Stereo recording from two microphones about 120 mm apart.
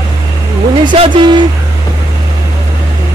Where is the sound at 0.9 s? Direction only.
45° right (ahead or behind).